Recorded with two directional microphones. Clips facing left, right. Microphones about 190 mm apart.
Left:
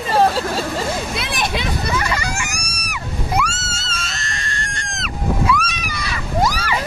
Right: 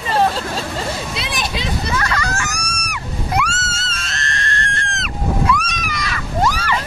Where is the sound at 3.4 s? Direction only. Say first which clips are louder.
Right 1 dB; centre (ahead or behind).